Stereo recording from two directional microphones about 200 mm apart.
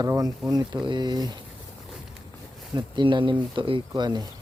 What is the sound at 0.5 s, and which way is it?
Speech, 20° right (ahead or behind).